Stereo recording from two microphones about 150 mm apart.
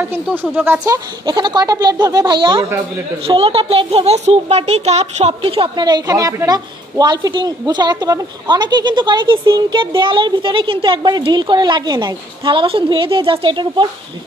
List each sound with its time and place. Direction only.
0.0 s speech: 15° right (ahead or behind)
1.2 s speech: 30° right (ahead or behind)